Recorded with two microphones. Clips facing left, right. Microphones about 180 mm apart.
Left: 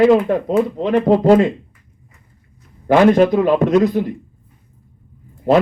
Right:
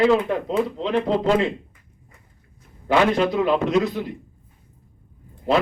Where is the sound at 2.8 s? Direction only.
50° left (ahead or behind).